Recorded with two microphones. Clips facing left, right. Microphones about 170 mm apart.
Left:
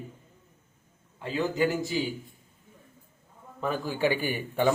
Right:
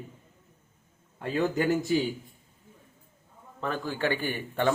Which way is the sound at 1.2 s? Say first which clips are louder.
Even; 50° right (ahead or behind).